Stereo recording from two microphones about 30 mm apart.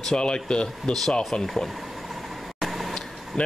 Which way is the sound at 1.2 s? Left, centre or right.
Centre.